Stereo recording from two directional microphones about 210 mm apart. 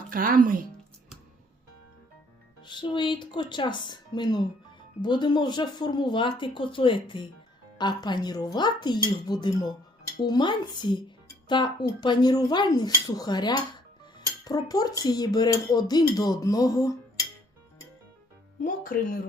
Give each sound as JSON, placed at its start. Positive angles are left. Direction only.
{"t": 0.1, "sound": "speech", "side_deg": -40}
{"t": 2.6, "sound": "speech", "side_deg": 20}
{"t": 18.6, "sound": "speech", "side_deg": 40}